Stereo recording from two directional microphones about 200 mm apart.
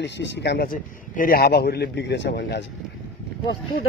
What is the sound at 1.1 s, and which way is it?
Speech, 45° left (ahead or behind).